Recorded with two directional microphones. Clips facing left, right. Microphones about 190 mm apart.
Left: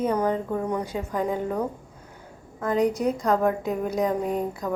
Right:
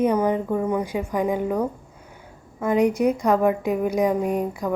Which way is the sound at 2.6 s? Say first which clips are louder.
Right 3 dB; 5° right (ahead or behind).